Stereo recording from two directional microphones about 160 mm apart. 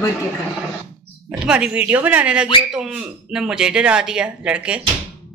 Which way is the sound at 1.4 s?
5° right (ahead or behind).